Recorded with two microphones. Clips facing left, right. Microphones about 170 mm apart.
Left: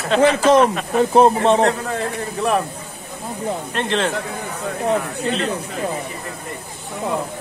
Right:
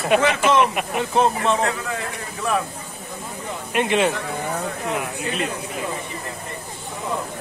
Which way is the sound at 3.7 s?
10° right (ahead or behind).